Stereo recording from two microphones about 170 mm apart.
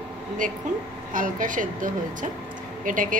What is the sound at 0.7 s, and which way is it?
A woman's voice, 45° right (ahead or behind).